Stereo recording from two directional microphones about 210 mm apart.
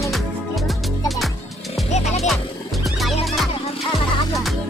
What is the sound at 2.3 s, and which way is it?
Music, centre (ahead or behind).